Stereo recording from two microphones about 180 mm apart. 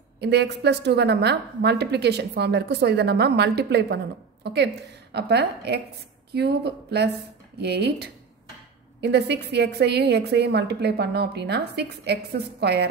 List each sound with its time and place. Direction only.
0.2 s a woman's voice: 70° right (ahead or behind)